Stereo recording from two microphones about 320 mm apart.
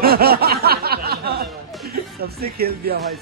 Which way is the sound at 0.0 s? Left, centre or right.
Right.